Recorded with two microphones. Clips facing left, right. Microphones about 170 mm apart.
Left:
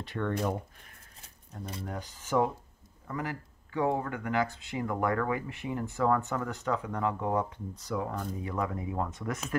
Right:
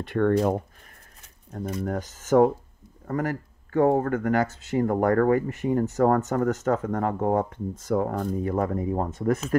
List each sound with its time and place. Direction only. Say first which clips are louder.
0.0 s speech: right 10 dB; 55° right (ahead or behind)
1.9 s speech: right 10 dB; 45° right (ahead or behind)